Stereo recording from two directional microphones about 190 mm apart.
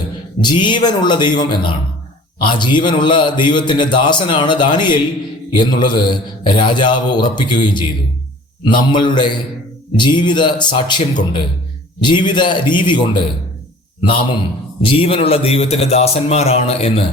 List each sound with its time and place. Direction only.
0.4 s a man's voice: 25° left (ahead or behind)
14.8 s a man's voice: 30° left (ahead or behind)